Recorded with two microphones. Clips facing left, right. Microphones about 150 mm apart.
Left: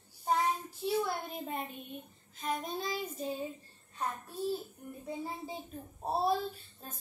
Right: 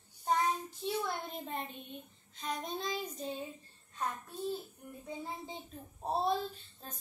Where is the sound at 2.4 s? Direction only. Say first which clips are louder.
Left 2 dB; 5° left (ahead or behind).